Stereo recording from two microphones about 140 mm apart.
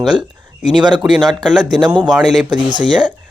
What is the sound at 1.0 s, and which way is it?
Speech, 5° right (ahead or behind).